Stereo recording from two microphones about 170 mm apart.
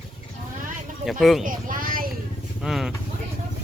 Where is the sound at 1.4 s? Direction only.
55° right (ahead or behind).